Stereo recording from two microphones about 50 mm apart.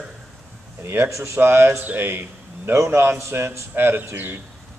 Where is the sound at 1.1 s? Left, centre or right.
Right.